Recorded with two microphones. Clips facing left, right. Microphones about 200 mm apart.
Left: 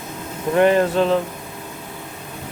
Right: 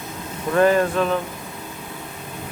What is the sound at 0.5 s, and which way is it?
Speech, 25° left (ahead or behind).